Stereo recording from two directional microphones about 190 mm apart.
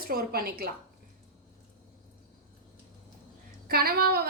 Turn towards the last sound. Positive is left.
turn(degrees=-55)  # may be behind; listen again after turning